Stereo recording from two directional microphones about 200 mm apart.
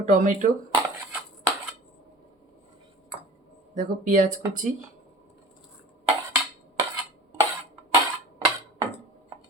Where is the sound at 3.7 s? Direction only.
40° right (ahead or behind).